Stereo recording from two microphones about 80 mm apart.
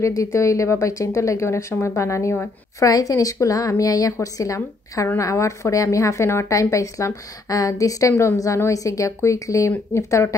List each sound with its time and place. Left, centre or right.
0.0 s a woman's voice: left